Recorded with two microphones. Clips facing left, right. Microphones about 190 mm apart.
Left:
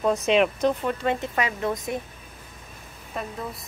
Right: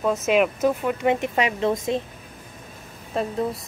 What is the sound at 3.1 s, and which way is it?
Speech, 30° right (ahead or behind).